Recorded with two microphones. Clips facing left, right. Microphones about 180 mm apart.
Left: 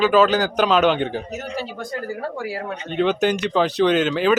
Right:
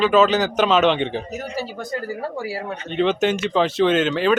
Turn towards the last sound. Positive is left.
turn(degrees=0)  # may be behind; listen again after turning